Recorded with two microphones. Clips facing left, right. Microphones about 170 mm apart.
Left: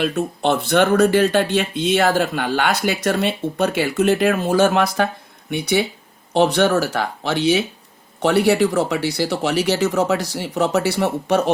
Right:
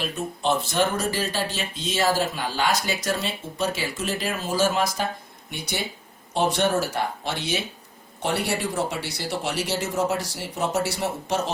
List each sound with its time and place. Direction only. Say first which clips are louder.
0.0 s speech: left 7 dB; 65° left (ahead or behind)